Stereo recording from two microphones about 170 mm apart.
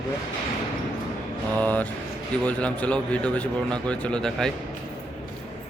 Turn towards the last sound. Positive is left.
turn(degrees=5)  # may be behind; listen again after turning